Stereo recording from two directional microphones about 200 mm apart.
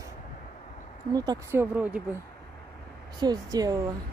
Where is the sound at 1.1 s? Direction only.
20° right (ahead or behind).